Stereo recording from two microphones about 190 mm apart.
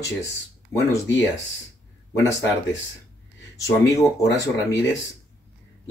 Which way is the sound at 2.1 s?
15° left (ahead or behind).